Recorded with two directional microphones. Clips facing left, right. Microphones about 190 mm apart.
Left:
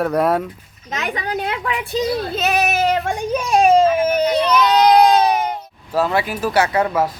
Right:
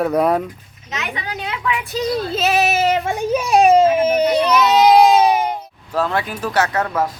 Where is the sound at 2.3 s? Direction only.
Centre (ahead or behind).